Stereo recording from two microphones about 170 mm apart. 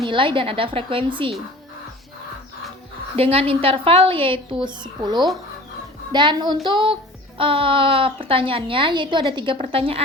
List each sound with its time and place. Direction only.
0.1 s a woman's voice: 30° right (ahead or behind)
3.2 s a woman's voice: 35° right (ahead or behind)